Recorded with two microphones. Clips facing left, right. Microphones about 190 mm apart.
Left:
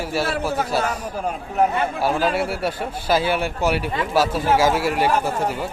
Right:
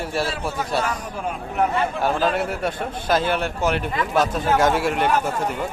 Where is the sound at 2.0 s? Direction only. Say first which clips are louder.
Left 1 dB; 10° left (ahead or behind).